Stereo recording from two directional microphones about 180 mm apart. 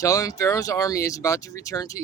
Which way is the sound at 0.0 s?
20° left (ahead or behind).